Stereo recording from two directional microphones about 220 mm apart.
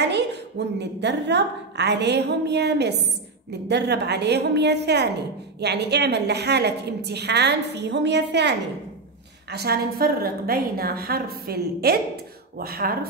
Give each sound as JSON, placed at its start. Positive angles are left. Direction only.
{"t": 0.0, "sound": "a woman's voice", "side_deg": -50}